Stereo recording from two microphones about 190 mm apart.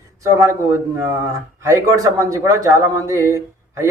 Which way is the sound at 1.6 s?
15° right (ahead or behind).